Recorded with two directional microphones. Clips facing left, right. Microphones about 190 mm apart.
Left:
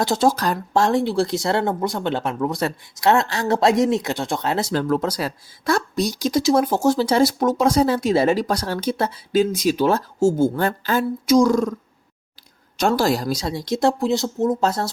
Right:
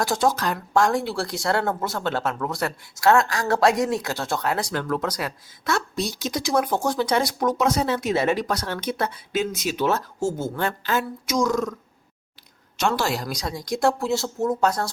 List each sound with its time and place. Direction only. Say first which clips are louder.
0.0 s speech: left 3 dB; 25° left (ahead or behind)
12.8 s speech: left 5 dB; 35° left (ahead or behind)